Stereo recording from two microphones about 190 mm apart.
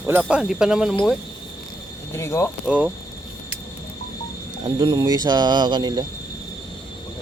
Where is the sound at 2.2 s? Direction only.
15° left (ahead or behind).